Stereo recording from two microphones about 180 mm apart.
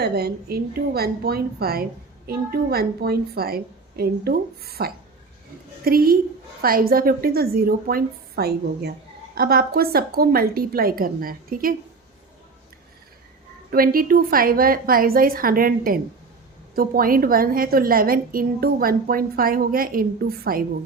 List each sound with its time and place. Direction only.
0.0 s a woman's voice: 60° right (ahead or behind)
13.7 s a woman's voice: 55° right (ahead or behind)